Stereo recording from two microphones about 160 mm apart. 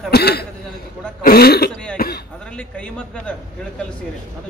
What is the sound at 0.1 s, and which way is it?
A man's voice, 85° left.